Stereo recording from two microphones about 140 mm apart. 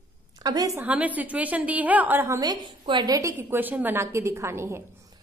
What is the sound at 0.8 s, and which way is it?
A woman's voice, 10° right (ahead or behind).